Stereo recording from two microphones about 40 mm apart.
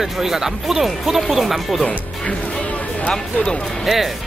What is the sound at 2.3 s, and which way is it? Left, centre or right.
Music, left.